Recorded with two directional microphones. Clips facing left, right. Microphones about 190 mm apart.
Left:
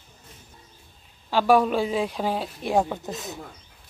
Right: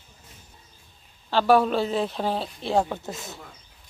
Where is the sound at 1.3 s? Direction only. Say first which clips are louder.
Even; 10° left (ahead or behind).